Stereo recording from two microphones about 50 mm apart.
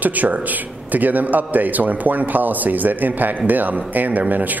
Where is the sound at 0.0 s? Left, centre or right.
Right.